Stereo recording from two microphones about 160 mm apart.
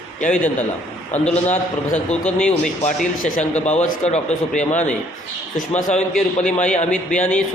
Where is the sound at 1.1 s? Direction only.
50° left (ahead or behind).